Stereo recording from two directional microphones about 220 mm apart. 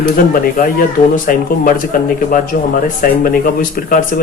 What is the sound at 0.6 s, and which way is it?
Speech, 35° left (ahead or behind).